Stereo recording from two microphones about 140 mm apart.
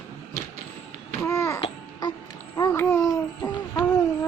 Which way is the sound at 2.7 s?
20° left (ahead or behind).